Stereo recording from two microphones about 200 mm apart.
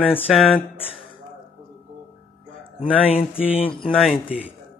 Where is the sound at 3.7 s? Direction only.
Centre (ahead or behind).